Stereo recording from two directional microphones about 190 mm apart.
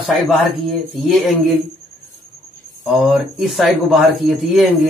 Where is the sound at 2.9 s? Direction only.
Centre (ahead or behind).